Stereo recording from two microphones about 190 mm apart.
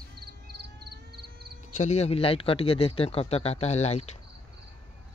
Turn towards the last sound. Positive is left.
turn(degrees=35)  # may be behind; listen again after turning